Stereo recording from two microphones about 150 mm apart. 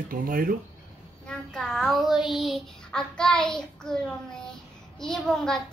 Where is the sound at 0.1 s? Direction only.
70° right (ahead or behind).